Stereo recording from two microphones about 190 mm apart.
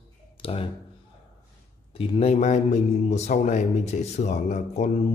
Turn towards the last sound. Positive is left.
turn(degrees=35)  # may be behind; listen again after turning